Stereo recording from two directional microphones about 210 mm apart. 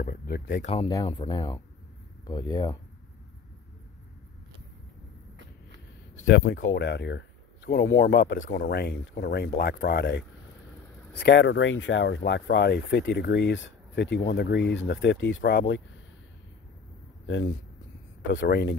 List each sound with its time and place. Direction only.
0.0 s speech: 45° left (ahead or behind)
0.8 s speech: 20° left (ahead or behind)
6.2 s speech: 55° left (ahead or behind)
18.4 s speech: 50° left (ahead or behind)